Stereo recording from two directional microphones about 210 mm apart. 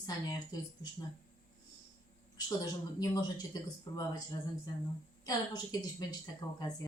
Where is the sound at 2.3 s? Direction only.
20° left (ahead or behind).